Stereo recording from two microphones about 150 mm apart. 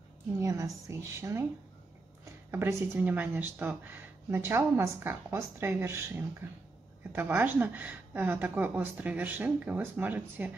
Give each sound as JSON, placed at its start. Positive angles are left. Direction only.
{"t": 0.4, "sound": "a woman's voice", "side_deg": -20}
{"t": 2.5, "sound": "speech", "side_deg": -15}